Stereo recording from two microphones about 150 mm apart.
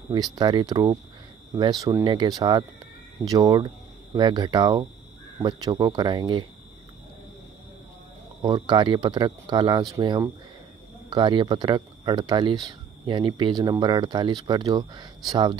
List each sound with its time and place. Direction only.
0.1 s speech: 30° right (ahead or behind)
8.5 s speech: 30° right (ahead or behind)